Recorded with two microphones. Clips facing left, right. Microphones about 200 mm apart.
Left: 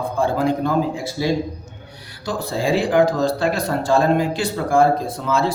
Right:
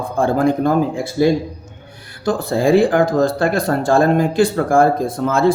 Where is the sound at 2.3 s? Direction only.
55° right (ahead or behind).